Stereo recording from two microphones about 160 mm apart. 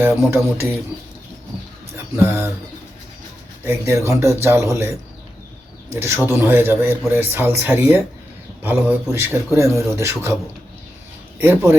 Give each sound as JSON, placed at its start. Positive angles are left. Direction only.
{"t": 0.3, "sound": "a man's voice", "side_deg": -15}
{"t": 2.1, "sound": "a man's voice", "side_deg": -15}
{"t": 3.6, "sound": "a man's voice", "side_deg": -15}
{"t": 11.3, "sound": "a man's voice", "side_deg": -15}